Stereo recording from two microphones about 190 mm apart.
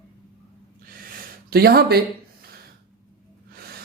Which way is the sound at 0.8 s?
50° right (ahead or behind).